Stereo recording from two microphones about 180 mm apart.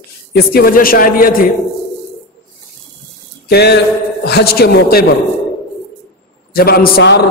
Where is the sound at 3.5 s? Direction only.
65° left (ahead or behind).